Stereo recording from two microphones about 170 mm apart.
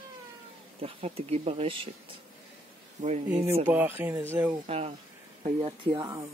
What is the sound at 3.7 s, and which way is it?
Speech, 10° right (ahead or behind).